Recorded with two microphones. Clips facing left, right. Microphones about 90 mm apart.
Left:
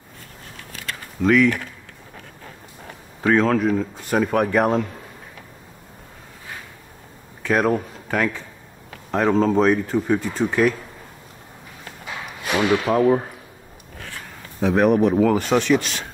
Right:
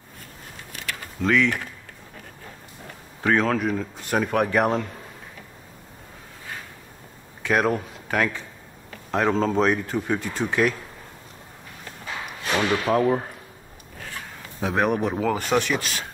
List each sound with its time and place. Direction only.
1.2 s speech: 5° left (ahead or behind)
3.2 s speech: centre (ahead or behind)
7.4 s speech: 5° right (ahead or behind)
12.4 s speech: 10° left (ahead or behind)
14.6 s speech: 15° right (ahead or behind)
15.1 s speech: centre (ahead or behind)